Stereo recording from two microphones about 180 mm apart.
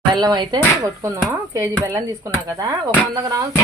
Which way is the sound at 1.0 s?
15° right (ahead or behind).